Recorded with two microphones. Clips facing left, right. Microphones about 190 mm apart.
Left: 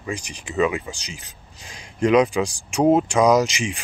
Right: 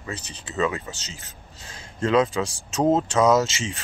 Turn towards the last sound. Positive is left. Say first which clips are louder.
# left 3 dB
turn(degrees=15)  # may be behind; listen again after turning